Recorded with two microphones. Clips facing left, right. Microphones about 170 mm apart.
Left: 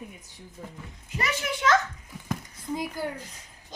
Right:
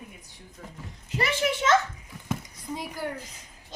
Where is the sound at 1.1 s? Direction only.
30° right (ahead or behind).